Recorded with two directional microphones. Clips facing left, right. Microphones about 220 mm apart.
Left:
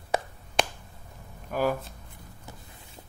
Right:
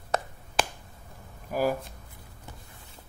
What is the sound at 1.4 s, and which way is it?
Shuffling cards, 5° right (ahead or behind).